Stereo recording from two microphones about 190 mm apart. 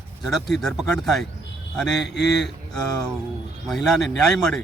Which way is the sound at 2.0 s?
65° left (ahead or behind).